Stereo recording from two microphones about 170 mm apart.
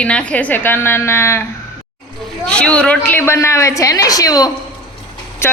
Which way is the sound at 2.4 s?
5° left (ahead or behind).